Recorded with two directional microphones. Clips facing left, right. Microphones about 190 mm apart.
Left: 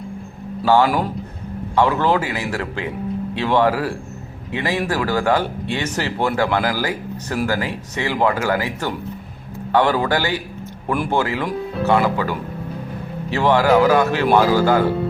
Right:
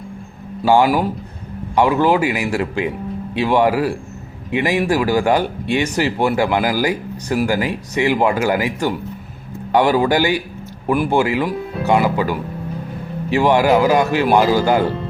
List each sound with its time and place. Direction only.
0.6 s speech: 15° right (ahead or behind)